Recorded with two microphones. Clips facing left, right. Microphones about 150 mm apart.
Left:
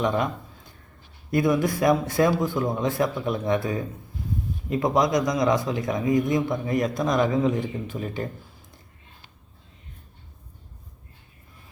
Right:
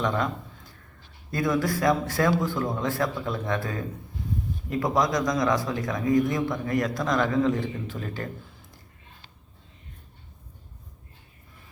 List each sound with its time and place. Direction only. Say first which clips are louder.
1.3 s speech: left 3 dB; 20° left (ahead or behind)